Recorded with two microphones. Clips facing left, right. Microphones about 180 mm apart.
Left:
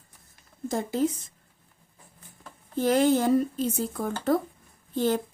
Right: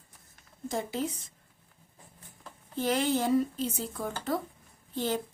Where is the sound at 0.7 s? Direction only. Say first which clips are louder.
Left 6 dB; 45° left (ahead or behind).